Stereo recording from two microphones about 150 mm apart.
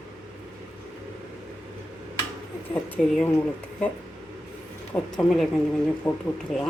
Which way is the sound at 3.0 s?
5° left (ahead or behind).